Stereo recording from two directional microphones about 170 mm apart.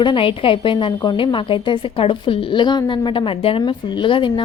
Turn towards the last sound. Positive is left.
turn(degrees=30)  # may be behind; listen again after turning